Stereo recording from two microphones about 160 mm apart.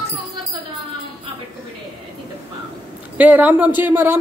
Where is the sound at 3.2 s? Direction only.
10° right (ahead or behind).